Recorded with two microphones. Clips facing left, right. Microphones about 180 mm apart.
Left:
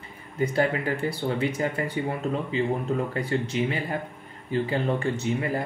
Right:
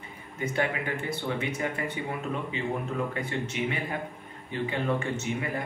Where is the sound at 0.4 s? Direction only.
35° left (ahead or behind).